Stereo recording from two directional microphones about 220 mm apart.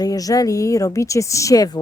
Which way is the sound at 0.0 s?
15° left (ahead or behind).